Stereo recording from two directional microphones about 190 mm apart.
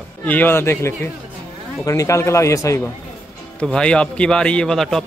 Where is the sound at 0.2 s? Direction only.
10° left (ahead or behind).